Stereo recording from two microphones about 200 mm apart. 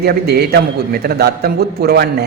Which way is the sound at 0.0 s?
50° right (ahead or behind).